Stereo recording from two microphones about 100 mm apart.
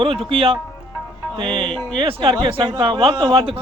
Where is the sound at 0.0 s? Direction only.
70° right (ahead or behind).